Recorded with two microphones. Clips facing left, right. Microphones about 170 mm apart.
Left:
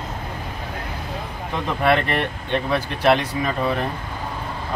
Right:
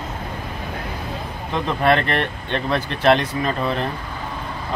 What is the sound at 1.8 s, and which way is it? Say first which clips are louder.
Speech: right 1 dB; 10° left (ahead or behind).